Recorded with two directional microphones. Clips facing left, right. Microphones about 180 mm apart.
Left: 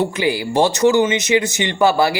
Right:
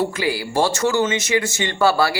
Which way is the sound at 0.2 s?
20° left (ahead or behind).